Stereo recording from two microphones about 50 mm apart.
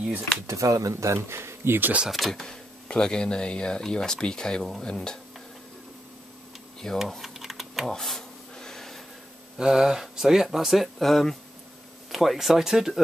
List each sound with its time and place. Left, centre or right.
0.5 s speech: right
2.0 s speech: centre
2.4 s speech: centre
6.8 s speech: centre
7.2 s typing: centre
7.9 s a sound: centre
9.6 s speech: centre